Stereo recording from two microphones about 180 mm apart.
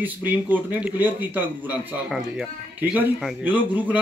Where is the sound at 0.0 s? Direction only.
10° right (ahead or behind).